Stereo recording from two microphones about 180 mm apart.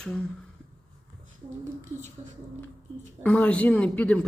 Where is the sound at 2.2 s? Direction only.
35° right (ahead or behind).